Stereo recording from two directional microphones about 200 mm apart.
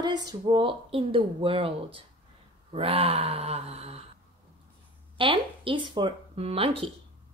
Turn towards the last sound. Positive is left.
turn(degrees=-30)  # may be behind; listen again after turning